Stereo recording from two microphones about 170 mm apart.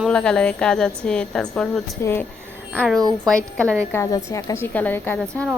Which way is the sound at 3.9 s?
20° left (ahead or behind).